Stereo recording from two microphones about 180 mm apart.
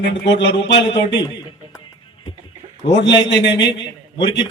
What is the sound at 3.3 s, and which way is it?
Speech, 80° left.